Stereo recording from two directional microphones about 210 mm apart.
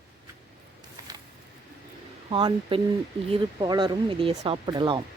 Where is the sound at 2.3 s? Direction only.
25° right (ahead or behind).